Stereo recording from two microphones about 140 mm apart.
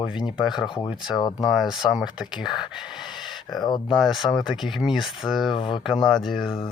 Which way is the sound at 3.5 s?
30° left (ahead or behind).